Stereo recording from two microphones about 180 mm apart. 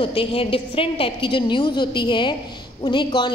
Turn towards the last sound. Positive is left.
turn(degrees=25)  # may be behind; listen again after turning